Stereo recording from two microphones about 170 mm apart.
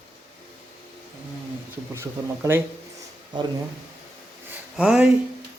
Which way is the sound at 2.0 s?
15° right (ahead or behind).